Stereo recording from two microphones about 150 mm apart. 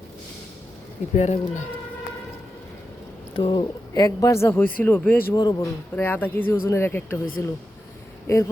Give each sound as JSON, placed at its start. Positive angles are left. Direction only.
{"t": 1.1, "sound": "speech", "side_deg": 50}
{"t": 3.3, "sound": "speech", "side_deg": 35}
{"t": 5.3, "sound": "speech", "side_deg": 25}
{"t": 6.0, "sound": "speech", "side_deg": 10}